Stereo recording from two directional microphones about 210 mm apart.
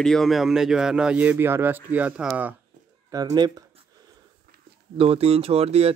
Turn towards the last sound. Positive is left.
turn(degrees=-30)  # may be behind; listen again after turning